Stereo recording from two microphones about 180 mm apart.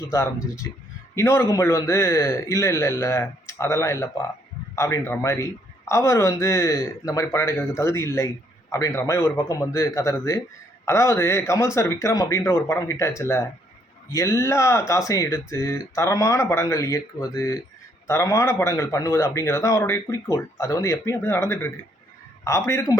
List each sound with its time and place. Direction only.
0.1 s a man's voice: 15° left (ahead or behind)